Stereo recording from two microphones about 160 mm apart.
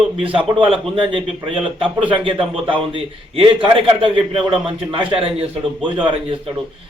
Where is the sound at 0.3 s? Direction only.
30° right (ahead or behind).